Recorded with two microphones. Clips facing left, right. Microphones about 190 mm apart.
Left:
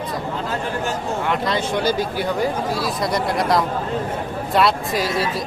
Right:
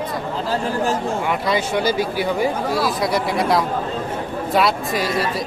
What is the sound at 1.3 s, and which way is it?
Speech, 5° right (ahead or behind).